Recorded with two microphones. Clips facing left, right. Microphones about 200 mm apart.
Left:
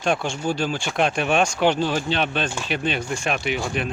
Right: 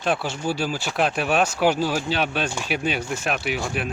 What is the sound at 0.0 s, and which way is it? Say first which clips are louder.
Speech: left 1 dB; 5° right (ahead or behind).